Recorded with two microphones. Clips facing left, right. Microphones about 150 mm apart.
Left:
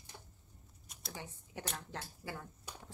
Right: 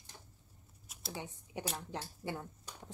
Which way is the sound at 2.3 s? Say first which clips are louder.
Right 4 dB; 20° right (ahead or behind).